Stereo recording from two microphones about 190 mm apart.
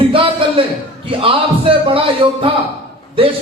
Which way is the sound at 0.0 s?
30° right (ahead or behind).